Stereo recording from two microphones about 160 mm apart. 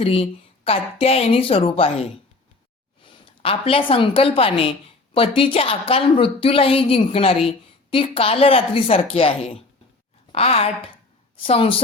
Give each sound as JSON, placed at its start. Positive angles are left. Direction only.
{"t": 0.0, "sound": "a woman's voice", "side_deg": 35}